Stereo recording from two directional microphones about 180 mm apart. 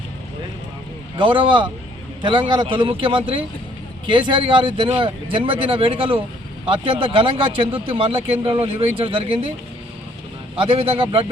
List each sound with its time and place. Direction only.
1.1 s speech: 25° right (ahead or behind)
10.6 s speech: 30° right (ahead or behind)